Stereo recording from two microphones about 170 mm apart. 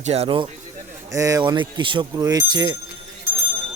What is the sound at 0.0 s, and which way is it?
Speech, 40° right (ahead or behind).